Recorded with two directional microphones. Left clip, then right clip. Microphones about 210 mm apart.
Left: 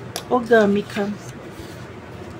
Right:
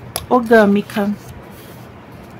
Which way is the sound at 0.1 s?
20° right (ahead or behind).